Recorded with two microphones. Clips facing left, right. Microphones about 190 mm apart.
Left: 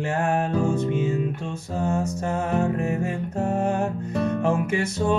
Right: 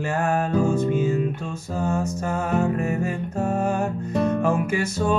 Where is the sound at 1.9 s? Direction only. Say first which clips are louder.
Even; 20° left (ahead or behind).